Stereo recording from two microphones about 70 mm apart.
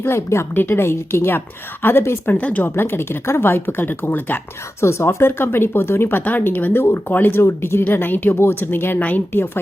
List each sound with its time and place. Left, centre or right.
0.0 s speech: left
2.7 s speech: left
4.8 s speech: left
7.4 s speech: left